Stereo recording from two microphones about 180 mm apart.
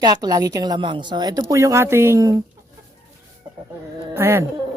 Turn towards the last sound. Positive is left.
turn(degrees=-15)  # may be behind; listen again after turning